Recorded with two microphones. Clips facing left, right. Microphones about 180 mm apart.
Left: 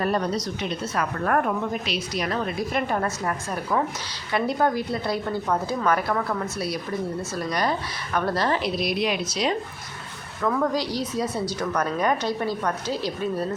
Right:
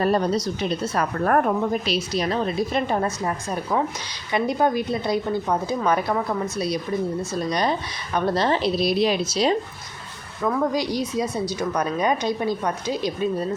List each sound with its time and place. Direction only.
0.0 s speech: 35° right (ahead or behind)
10.4 s speech: 10° right (ahead or behind)